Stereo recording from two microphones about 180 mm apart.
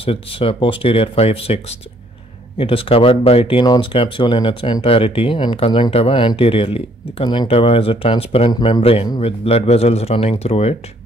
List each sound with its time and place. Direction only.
0.0 s speech: 30° left (ahead or behind)